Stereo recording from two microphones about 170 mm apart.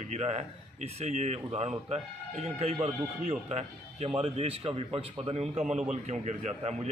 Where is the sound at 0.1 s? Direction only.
40° right (ahead or behind).